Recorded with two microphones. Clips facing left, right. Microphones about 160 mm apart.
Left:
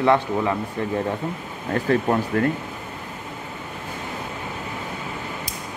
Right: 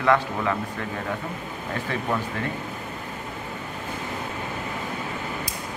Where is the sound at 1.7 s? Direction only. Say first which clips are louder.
Left 7 dB; 40° left (ahead or behind).